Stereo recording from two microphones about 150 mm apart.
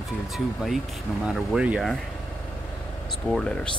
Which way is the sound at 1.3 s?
5° right (ahead or behind).